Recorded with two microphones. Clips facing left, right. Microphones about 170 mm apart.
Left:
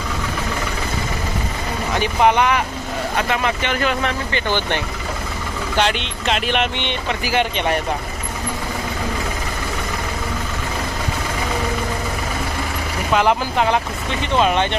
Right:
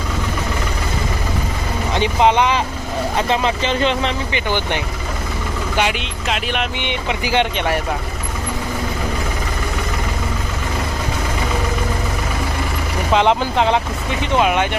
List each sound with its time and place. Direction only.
2.0 s speech: 20° right (ahead or behind); by 6.8 s centre (ahead or behind)
6.8 s speech: 15° right (ahead or behind)
13.1 s speech: 20° right (ahead or behind)